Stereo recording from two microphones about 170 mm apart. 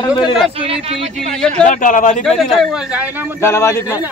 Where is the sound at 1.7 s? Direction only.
50° left (ahead or behind).